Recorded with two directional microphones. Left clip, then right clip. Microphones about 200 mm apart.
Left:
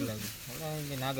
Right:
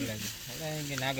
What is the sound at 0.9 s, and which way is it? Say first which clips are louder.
Speech: right 3 dB; 10° left (ahead or behind).